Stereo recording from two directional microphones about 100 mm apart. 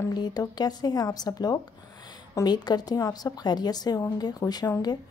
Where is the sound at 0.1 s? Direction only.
40° left (ahead or behind).